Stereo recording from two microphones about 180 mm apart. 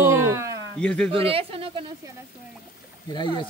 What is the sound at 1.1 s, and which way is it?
Speech, 30° right (ahead or behind).